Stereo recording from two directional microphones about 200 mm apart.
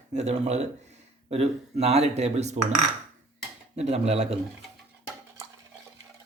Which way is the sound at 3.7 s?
30° right (ahead or behind).